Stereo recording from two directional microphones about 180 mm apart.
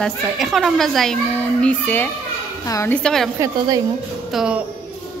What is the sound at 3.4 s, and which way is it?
Speech, 20° right (ahead or behind).